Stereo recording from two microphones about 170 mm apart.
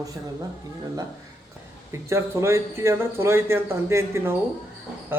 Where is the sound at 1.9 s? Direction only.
15° right (ahead or behind).